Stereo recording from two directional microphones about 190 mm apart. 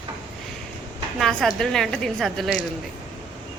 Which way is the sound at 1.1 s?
Centre (ahead or behind).